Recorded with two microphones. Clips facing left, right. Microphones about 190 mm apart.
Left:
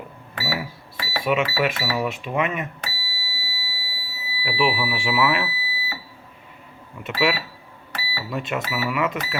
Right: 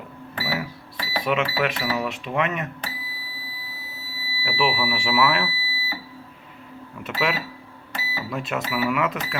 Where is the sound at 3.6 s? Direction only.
5° left (ahead or behind).